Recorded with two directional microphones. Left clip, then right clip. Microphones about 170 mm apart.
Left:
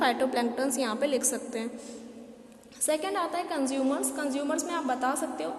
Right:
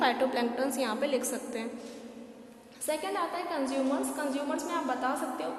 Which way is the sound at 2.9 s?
45° left (ahead or behind).